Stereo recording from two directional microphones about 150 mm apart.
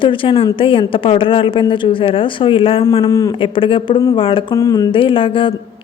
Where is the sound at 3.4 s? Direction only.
35° left (ahead or behind).